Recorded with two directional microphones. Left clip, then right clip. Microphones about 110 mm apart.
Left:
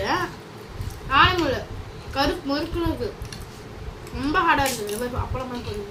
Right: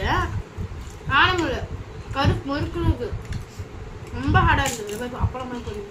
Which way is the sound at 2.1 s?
5° right (ahead or behind).